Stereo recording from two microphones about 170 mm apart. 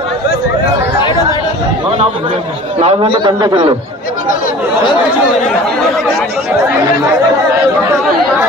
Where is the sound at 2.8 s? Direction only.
35° right (ahead or behind).